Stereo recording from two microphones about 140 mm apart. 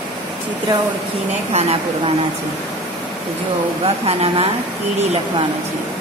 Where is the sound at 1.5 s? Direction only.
50° right (ahead or behind).